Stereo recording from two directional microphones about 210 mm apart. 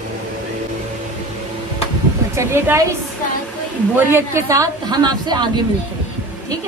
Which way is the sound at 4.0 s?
10° right (ahead or behind).